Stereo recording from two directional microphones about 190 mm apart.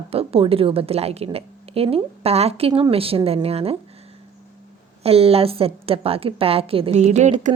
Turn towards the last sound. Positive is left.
turn(degrees=-40)  # may be behind; listen again after turning